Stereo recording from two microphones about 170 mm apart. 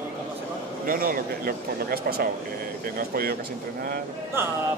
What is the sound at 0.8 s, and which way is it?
Speech, 55° right (ahead or behind).